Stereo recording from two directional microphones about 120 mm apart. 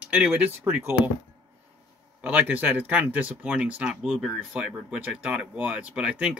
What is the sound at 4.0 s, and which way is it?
Speech, centre (ahead or behind).